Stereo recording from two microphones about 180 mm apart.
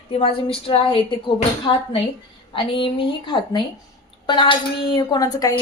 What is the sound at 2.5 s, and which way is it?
A woman's voice, 25° left (ahead or behind).